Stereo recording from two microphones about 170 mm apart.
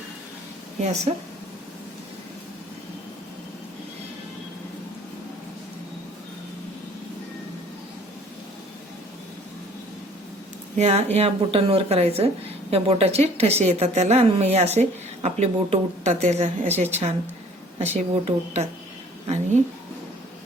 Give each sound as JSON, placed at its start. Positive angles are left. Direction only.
{"t": 0.8, "sound": "a woman's voice", "side_deg": -45}
{"t": 10.8, "sound": "a woman's voice", "side_deg": -40}